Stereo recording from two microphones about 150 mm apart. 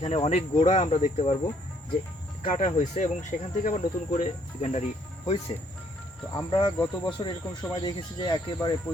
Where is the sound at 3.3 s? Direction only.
55° left (ahead or behind).